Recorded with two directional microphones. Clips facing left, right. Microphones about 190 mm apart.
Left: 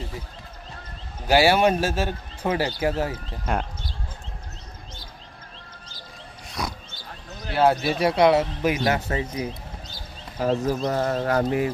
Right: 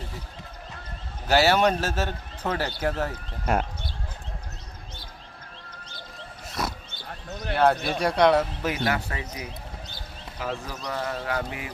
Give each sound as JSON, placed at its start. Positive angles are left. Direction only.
{"t": 1.3, "sound": "speech", "side_deg": 10}
{"t": 3.4, "sound": "speech", "side_deg": 0}
{"t": 6.5, "sound": "a sound", "side_deg": 0}
{"t": 7.5, "sound": "speech", "side_deg": 5}
{"t": 10.3, "sound": "speech", "side_deg": 40}